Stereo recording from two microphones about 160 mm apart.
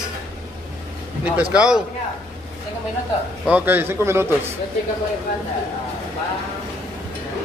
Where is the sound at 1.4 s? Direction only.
5° right (ahead or behind).